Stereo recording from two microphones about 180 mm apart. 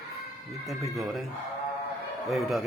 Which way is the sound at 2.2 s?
Centre (ahead or behind).